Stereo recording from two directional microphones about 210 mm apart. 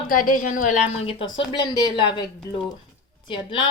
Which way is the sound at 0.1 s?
40° left (ahead or behind).